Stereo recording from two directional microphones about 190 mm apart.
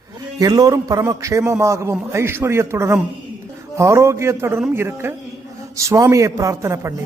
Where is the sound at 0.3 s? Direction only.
20° right (ahead or behind).